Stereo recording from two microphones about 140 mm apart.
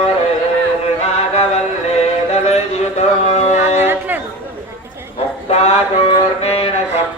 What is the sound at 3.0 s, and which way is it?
Music, 50° left (ahead or behind).